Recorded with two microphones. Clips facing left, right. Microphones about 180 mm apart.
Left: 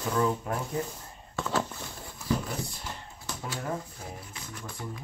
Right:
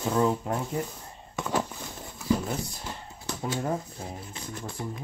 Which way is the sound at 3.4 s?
25° right (ahead or behind).